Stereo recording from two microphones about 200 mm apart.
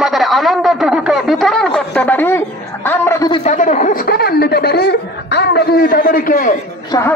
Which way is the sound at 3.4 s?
40° left (ahead or behind).